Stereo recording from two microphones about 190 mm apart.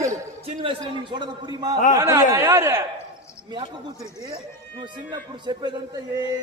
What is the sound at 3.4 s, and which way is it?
Speech, 25° right (ahead or behind).